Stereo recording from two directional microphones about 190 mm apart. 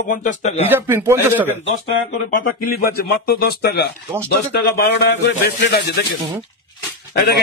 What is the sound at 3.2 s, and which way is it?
Speech, 55° left (ahead or behind).